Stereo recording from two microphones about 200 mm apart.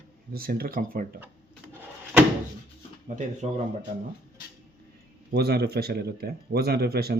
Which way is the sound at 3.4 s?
30° right (ahead or behind).